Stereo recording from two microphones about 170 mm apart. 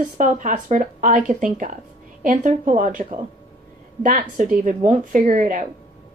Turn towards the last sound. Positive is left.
turn(degrees=-50)  # may be behind; listen again after turning